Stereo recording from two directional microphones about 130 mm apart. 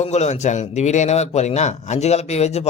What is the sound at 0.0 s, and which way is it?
A man's voice, 60° left (ahead or behind).